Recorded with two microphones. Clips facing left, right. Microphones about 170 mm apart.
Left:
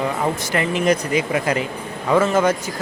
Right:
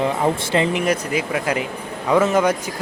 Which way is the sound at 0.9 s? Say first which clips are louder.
Left 2 dB; 5° right (ahead or behind).